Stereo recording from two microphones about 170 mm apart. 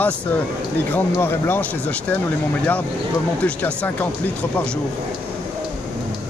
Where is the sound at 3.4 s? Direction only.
10° left (ahead or behind).